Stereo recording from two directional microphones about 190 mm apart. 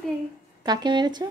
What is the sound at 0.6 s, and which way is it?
Speech, 20° right (ahead or behind).